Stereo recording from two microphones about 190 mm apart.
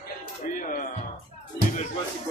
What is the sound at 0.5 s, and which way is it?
Music, 45° left (ahead or behind).